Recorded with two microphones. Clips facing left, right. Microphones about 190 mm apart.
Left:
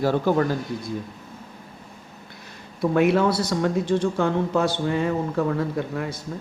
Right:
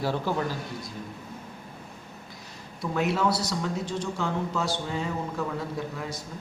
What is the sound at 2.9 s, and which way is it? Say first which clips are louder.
Speech: left 6 dB; 60° left (ahead or behind).